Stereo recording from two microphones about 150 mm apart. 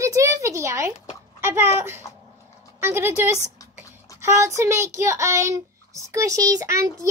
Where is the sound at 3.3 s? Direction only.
20° left (ahead or behind).